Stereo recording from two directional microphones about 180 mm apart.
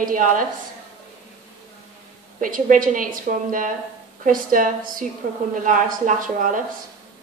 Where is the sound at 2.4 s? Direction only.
50° right (ahead or behind).